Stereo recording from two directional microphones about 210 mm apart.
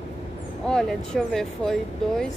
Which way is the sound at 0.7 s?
5° left (ahead or behind).